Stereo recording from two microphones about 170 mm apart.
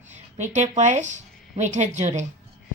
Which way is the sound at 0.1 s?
45° right (ahead or behind).